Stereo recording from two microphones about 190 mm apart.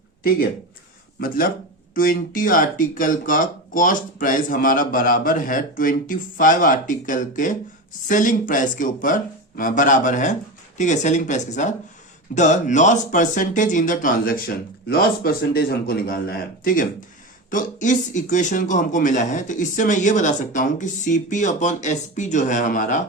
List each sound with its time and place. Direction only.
2.0 s a man's voice: 45° left (ahead or behind)